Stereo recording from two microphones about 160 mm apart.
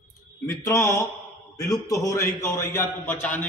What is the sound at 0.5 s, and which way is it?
A man's voice, 15° left (ahead or behind).